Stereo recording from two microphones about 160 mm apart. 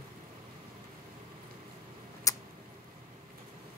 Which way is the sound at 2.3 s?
20° left (ahead or behind).